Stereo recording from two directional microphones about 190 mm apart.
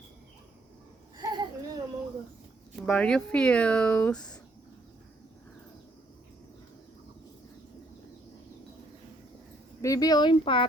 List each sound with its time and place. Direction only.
1.1 s a sound: 20° right (ahead or behind)
2.8 s speech: 5° left (ahead or behind)
9.8 s speech: 20° left (ahead or behind)